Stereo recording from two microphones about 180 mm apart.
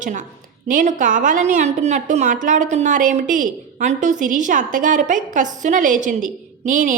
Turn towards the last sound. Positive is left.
turn(degrees=-45)  # may be behind; listen again after turning